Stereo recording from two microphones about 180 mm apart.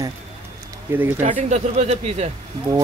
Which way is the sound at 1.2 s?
40° right (ahead or behind).